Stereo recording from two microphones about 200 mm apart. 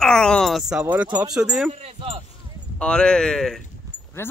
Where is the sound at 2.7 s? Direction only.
5° left (ahead or behind).